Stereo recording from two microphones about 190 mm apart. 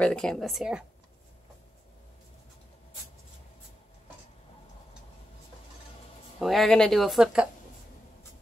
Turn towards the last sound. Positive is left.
turn(degrees=0)  # may be behind; listen again after turning